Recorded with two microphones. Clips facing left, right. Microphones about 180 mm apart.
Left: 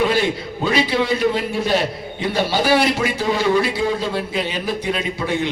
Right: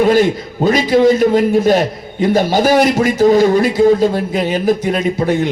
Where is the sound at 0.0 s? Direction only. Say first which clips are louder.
Right 7 dB; 45° right (ahead or behind).